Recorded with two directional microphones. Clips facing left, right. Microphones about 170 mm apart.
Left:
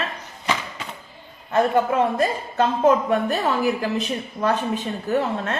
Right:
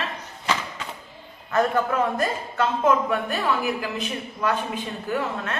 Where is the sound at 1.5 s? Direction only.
30° left (ahead or behind).